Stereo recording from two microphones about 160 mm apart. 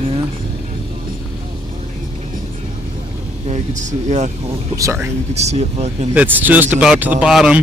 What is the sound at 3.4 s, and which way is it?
Speech, 50° right (ahead or behind).